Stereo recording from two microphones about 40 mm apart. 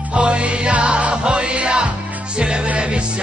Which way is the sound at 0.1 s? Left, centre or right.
Right.